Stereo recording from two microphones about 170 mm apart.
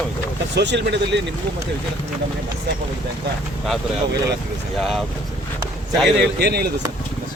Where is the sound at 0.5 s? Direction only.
90° right.